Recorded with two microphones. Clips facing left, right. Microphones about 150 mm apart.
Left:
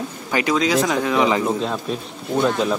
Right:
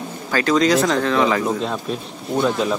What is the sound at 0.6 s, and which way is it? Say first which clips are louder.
Speech: right 4 dB; centre (ahead or behind).